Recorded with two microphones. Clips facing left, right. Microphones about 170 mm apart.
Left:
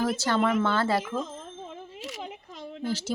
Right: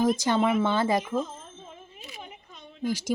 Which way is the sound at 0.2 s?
15° right (ahead or behind).